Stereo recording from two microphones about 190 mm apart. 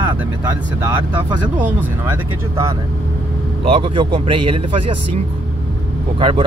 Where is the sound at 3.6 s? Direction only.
30° right (ahead or behind).